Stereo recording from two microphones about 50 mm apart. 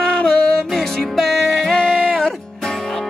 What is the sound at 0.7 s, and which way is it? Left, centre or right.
Music, centre.